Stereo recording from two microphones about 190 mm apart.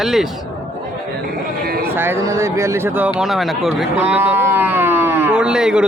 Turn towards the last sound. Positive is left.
turn(degrees=-5)  # may be behind; listen again after turning